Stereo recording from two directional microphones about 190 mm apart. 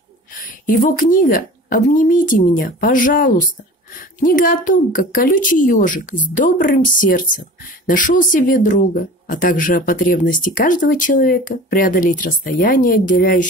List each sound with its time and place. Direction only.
0.3 s speech: 45° left (ahead or behind)